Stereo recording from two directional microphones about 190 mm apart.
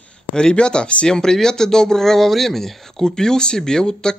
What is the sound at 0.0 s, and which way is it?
Speech, 5° left (ahead or behind).